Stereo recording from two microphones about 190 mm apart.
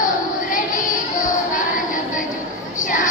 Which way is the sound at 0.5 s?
45° left (ahead or behind).